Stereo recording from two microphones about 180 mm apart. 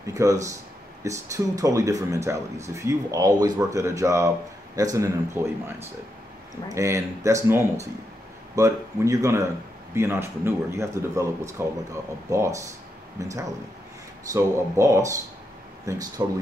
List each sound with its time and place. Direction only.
0.0 s speech: 20° right (ahead or behind)